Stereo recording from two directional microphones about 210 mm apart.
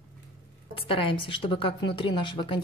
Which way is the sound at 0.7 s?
25° left (ahead or behind).